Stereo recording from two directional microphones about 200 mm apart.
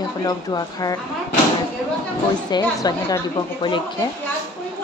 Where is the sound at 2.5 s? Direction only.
20° left (ahead or behind).